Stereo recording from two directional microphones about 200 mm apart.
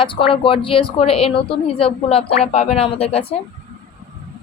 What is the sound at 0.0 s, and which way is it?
A woman's voice, 25° left (ahead or behind).